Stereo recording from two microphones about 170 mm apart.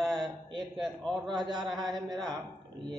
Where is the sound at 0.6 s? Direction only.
Centre (ahead or behind).